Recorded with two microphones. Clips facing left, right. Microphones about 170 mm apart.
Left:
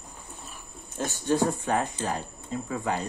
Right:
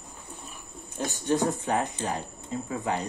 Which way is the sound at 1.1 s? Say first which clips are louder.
Left 1 dB; 20° right (ahead or behind).